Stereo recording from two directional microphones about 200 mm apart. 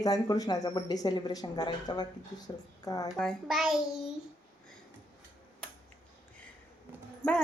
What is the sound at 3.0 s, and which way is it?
Speech, centre (ahead or behind).